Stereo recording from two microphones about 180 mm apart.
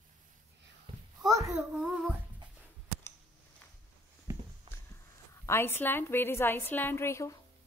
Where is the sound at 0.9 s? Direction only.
25° right (ahead or behind).